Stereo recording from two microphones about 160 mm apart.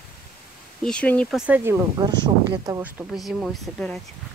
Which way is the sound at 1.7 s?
15° right (ahead or behind).